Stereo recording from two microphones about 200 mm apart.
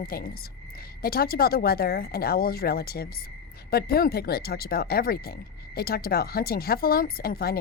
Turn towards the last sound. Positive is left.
turn(degrees=50)  # may be behind; listen again after turning